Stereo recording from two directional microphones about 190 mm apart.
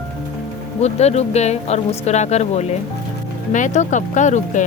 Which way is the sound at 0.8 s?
35° left (ahead or behind).